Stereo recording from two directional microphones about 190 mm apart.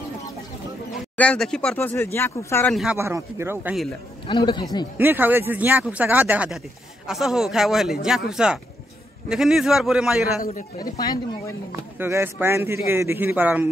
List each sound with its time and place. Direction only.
1.1 s speech: 5° left (ahead or behind)
2.7 s a man's voice: centre (ahead or behind)
3.0 s a man's voice: 15° right (ahead or behind)
4.3 s speech: 25° left (ahead or behind)
4.9 s a man's voice: 10° right (ahead or behind)
10.4 s a man's voice: 50° left (ahead or behind)
11.0 s speech: 20° left (ahead or behind)
11.7 s a man's voice: 15° right (ahead or behind)